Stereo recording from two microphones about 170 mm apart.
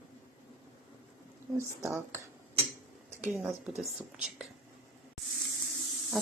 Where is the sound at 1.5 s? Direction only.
15° right (ahead or behind).